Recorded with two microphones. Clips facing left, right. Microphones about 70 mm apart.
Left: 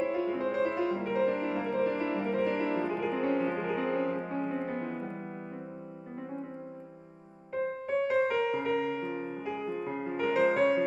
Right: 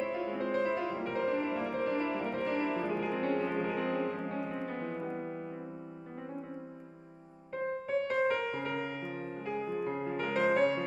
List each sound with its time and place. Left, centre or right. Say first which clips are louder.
0.0 s music: left 4 dB; centre
8.2 s music: left 3 dB; centre
9.1 s music: left 4 dB; centre
9.5 s music: right 2 dB; centre